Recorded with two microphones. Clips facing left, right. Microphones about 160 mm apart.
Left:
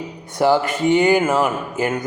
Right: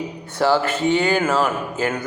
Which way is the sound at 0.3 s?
15° left (ahead or behind).